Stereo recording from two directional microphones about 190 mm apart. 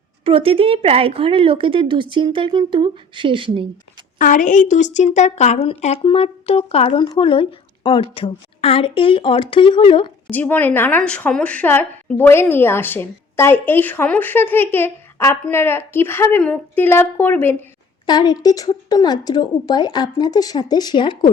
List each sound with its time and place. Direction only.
0.3 s speech: 30° right (ahead or behind)
4.2 s a woman's voice: 45° left (ahead or behind); by 10.1 s 25° left (ahead or behind)
10.2 s a woman's voice: 10° left (ahead or behind)
18.0 s a woman's voice: 20° left (ahead or behind)